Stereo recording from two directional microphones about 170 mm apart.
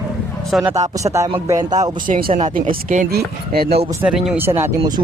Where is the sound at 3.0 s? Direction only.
65° right (ahead or behind).